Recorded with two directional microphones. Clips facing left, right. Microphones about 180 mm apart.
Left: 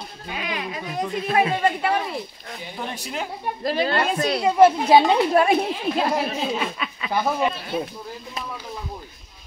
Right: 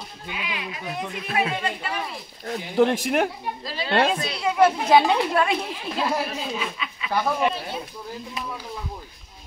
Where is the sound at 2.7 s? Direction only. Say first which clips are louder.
Right 12 dB; 85° right.